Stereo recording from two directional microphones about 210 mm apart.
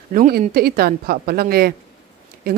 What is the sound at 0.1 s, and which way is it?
Speech, 40° right (ahead or behind).